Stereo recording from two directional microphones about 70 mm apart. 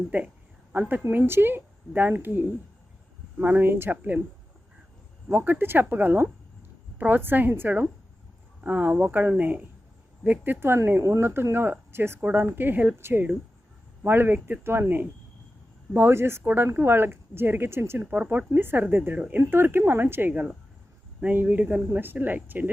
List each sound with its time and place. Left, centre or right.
0.1 s speech: right
5.3 s speech: right
14.6 s speech: right
18.0 s speech: right